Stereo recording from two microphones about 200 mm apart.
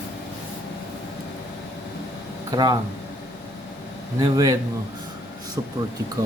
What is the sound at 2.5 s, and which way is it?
Speech, 20° right (ahead or behind).